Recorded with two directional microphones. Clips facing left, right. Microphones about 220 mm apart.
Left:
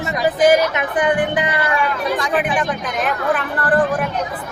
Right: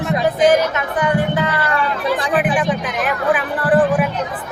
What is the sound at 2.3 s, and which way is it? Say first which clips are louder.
Speech: right 2 dB; 5° right (ahead or behind).